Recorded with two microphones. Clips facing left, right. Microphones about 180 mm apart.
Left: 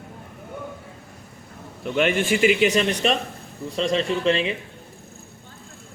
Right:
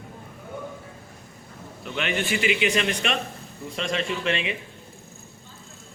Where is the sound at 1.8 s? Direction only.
50° left (ahead or behind).